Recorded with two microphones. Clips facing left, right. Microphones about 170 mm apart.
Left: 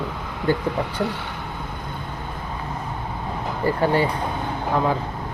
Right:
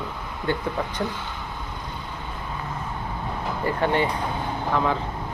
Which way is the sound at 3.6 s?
35° left (ahead or behind).